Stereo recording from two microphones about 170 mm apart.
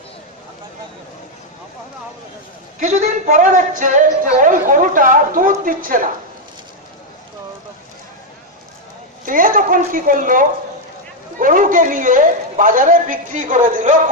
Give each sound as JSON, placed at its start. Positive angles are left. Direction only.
{"t": 2.8, "sound": "a man's voice", "side_deg": -45}
{"t": 9.2, "sound": "a man's voice", "side_deg": -55}